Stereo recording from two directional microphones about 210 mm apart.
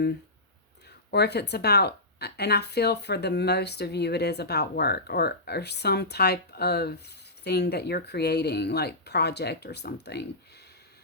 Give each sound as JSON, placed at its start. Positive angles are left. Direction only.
{"t": 0.9, "sound": "speech", "side_deg": 50}